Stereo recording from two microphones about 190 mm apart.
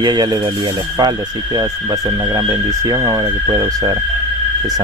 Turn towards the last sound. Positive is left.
turn(degrees=-20)  # may be behind; listen again after turning